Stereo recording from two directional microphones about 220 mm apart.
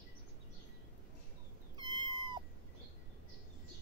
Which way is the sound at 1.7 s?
20° right (ahead or behind).